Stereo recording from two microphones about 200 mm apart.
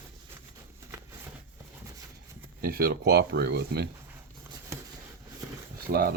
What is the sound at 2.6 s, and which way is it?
Speech, 50° right (ahead or behind).